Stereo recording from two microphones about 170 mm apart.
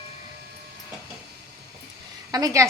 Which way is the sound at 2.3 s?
20° right (ahead or behind).